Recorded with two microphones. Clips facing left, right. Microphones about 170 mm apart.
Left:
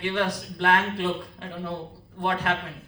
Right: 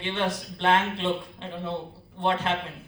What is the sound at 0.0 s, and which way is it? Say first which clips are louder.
A man's voice: left 2 dB; 25° right (ahead or behind).